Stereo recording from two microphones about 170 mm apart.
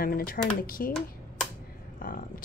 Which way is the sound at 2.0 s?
55° left (ahead or behind).